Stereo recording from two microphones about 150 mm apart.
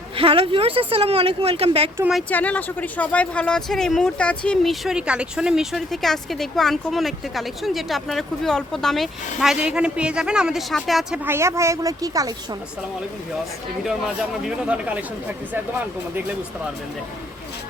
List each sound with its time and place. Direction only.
0.2 s a woman's voice: 40° right (ahead or behind)
2.3 s speech: 10° left (ahead or behind)
11.3 s speech: 20° right (ahead or behind)
14.4 s speech: 5° right (ahead or behind)